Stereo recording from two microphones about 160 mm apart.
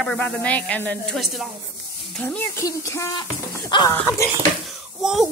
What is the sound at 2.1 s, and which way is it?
Speech, 10° left (ahead or behind).